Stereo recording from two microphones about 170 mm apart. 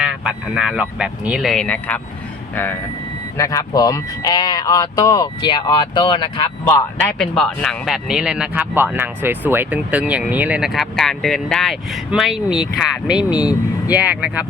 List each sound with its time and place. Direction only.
0.0 s speech: 5° right (ahead or behind)
3.3 s speech: 20° left (ahead or behind)
7.1 s speech: 5° left (ahead or behind)